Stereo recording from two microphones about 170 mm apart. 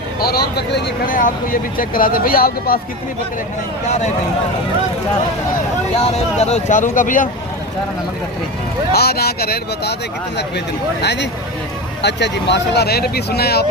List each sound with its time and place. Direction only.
0.2 s speech: 65° left (ahead or behind)
6.1 s speech: 40° left (ahead or behind)
8.9 s speech: 70° left (ahead or behind)
11.0 s speech: 90° left; by 13.7 s 70° left (ahead or behind)